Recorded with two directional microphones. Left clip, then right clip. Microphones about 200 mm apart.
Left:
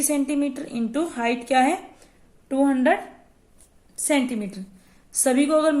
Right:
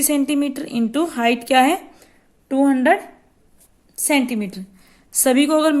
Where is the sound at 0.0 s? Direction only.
50° right (ahead or behind).